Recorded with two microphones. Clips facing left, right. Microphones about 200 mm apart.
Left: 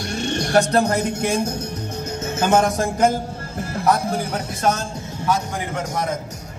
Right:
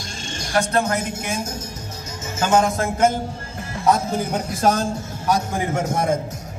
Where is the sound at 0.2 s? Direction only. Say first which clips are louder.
Left 9 dB; 65° left (ahead or behind).